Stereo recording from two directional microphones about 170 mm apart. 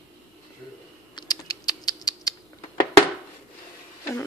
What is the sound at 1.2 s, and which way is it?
Typing, 25° left (ahead or behind).